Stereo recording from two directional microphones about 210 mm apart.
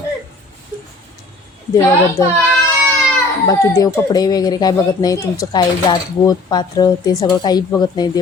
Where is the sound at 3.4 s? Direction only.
20° left (ahead or behind).